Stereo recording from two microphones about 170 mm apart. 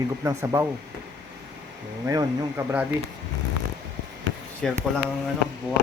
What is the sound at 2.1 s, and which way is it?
Speech, 20° right (ahead or behind).